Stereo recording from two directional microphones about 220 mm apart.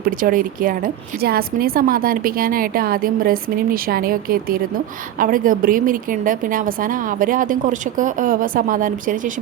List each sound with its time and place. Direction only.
0.0 s a woman's voice: 40° right (ahead or behind)